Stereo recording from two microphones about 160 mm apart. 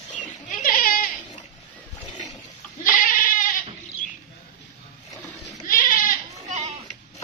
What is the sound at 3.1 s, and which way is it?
Goat, 60° left (ahead or behind).